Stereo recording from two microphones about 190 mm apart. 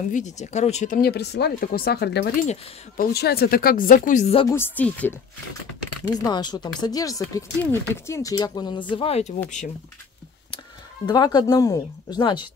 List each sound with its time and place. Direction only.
0.1 s speech: 40° left (ahead or behind); by 2.3 s 60° left (ahead or behind)
2.4 s speech: 40° left (ahead or behind)
3.1 s speech: 55° left (ahead or behind); by 4.5 s 35° left (ahead or behind)
4.5 s speech: 10° left (ahead or behind)
6.0 s speech: 20° left (ahead or behind)
11.1 s speech: 20° left (ahead or behind)